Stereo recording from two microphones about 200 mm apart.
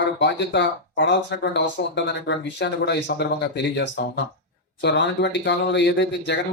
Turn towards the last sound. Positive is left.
turn(degrees=60)  # may be behind; listen again after turning